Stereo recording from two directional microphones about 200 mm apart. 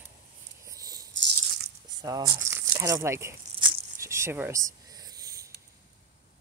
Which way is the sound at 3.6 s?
15° right (ahead or behind).